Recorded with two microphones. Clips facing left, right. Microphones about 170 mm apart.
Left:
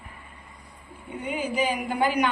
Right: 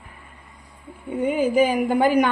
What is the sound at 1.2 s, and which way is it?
A woman's voice, 50° right (ahead or behind).